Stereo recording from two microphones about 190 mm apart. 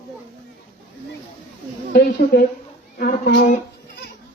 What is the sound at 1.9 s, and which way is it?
A man's voice, 55° left (ahead or behind).